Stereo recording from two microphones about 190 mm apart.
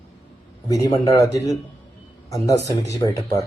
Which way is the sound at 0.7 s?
15° left (ahead or behind).